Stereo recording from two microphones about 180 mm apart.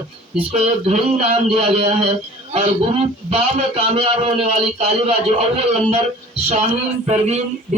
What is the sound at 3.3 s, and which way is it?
A man's voice, 30° right (ahead or behind).